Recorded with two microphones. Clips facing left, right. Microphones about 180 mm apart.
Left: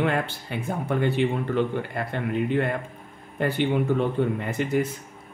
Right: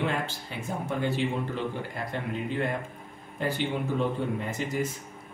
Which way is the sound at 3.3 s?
60° left (ahead or behind).